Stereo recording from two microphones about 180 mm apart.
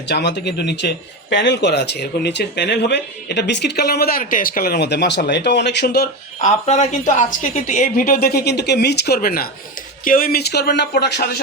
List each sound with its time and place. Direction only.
0.1 s speech: 70° left (ahead or behind)
6.4 s a woman's voice: 40° left (ahead or behind); by 11.3 s 70° left (ahead or behind)